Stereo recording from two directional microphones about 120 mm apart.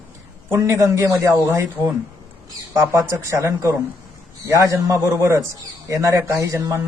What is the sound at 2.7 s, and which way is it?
Speech, 25° right (ahead or behind).